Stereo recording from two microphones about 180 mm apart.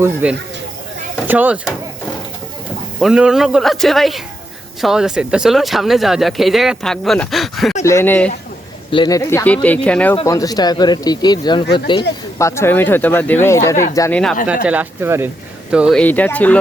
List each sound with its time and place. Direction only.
0.0 s speech: 10° right (ahead or behind)
3.0 s speech: 5° right (ahead or behind)
7.9 s speech: 15° left (ahead or behind)
8.9 s speech: 25° left (ahead or behind); by 10.2 s 5° left (ahead or behind)
10.2 s speech: 20° left (ahead or behind)
14.4 s speech: 5° right (ahead or behind)
16.0 s speech: 10° left (ahead or behind)